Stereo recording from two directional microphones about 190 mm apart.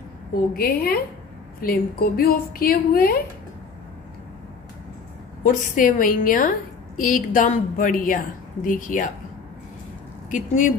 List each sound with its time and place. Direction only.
0.6 s a woman's voice: 55° left (ahead or behind)
5.4 s a woman's voice: 40° left (ahead or behind)
10.3 s a woman's voice: 40° left (ahead or behind)